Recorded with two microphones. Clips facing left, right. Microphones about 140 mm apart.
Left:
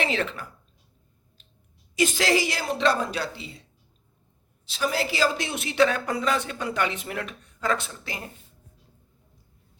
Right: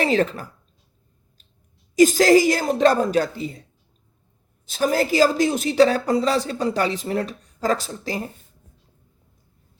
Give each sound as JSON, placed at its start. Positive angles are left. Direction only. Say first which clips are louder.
{"t": 0.0, "sound": "a woman's voice", "louder": "right 7 dB", "side_deg": -40}
{"t": 2.0, "sound": "a woman's voice", "louder": "right 9 dB", "side_deg": -40}